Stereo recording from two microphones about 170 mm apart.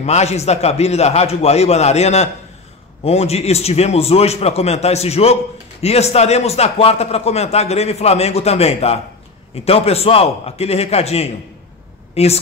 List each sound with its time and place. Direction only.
0.0 s a man's voice: 40° left (ahead or behind)